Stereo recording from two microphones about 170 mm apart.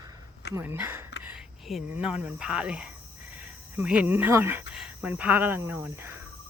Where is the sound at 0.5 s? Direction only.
10° right (ahead or behind).